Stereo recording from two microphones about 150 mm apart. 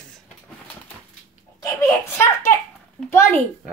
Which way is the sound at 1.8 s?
20° left (ahead or behind).